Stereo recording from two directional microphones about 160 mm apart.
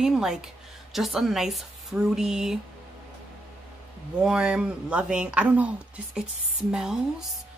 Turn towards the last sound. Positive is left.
turn(degrees=-5)  # may be behind; listen again after turning